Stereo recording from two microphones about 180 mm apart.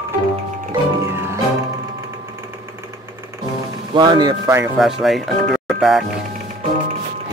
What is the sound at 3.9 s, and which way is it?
Speech, 25° right (ahead or behind).